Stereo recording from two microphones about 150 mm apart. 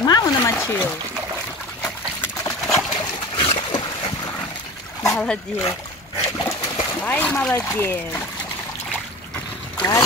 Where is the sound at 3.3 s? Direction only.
35° left (ahead or behind).